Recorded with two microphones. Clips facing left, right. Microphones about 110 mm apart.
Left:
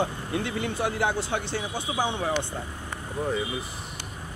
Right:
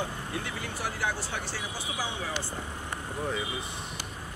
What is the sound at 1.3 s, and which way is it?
Speech, 60° left (ahead or behind).